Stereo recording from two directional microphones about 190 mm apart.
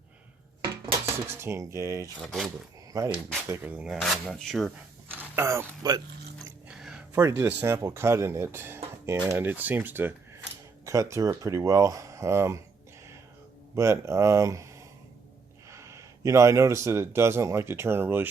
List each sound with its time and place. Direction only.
0.6 s dishes: 25° right (ahead or behind)
1.0 s speech: 15° right (ahead or behind)
2.2 s speech: centre (ahead or behind)
2.9 s speech: 15° right (ahead or behind); by 4.7 s centre (ahead or behind)
5.4 s speech: 15° right (ahead or behind)
6.7 s a sound: 5° right (ahead or behind)
7.2 s speech: 15° right (ahead or behind)
13.7 s speech: 15° right (ahead or behind)